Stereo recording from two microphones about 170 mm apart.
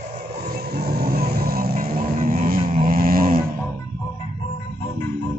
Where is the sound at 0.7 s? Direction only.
65° right (ahead or behind).